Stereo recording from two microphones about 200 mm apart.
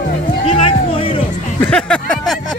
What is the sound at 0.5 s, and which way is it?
Music, 25° left (ahead or behind).